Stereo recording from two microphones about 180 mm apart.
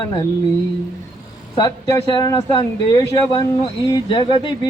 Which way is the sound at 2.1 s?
25° left (ahead or behind).